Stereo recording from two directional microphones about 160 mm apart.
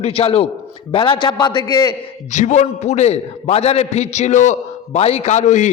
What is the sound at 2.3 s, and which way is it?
A man's voice, 50° left (ahead or behind).